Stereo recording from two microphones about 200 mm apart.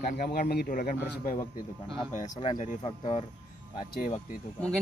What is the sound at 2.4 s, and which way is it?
Speech, 35° left (ahead or behind).